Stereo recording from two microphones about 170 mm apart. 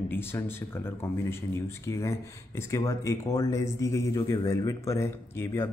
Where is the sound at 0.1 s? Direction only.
15° left (ahead or behind).